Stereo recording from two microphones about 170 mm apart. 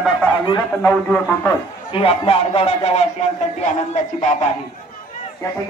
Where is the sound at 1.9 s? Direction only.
30° left (ahead or behind).